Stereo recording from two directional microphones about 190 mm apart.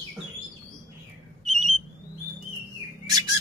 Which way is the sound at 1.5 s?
35° right (ahead or behind).